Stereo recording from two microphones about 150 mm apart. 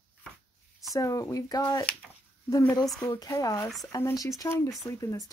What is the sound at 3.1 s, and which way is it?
Speech, 20° left (ahead or behind).